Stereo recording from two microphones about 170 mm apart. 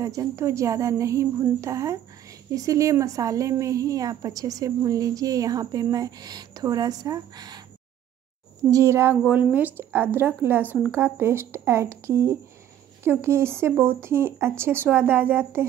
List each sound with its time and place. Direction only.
0.0 s a woman's voice: 20° right (ahead or behind)
8.6 s a woman's voice: 20° right (ahead or behind)